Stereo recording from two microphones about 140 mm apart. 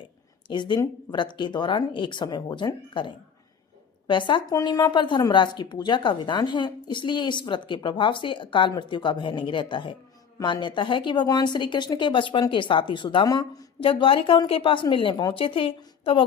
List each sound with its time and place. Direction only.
0.4 s speech: 35° left (ahead or behind)
13.7 s speech: 40° left (ahead or behind)